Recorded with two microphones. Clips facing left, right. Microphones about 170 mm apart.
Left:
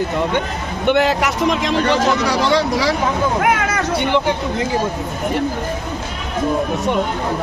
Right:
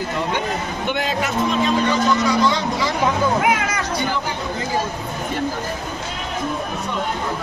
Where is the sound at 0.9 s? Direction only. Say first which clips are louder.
Left 8 dB; 70° left (ahead or behind).